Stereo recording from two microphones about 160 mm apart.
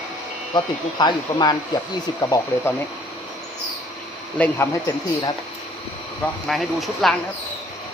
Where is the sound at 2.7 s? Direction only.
15° left (ahead or behind).